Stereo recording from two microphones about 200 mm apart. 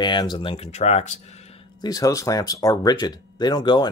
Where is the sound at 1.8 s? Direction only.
20° left (ahead or behind).